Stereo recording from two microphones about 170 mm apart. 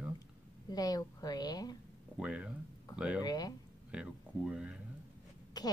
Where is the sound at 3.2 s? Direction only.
25° left (ahead or behind).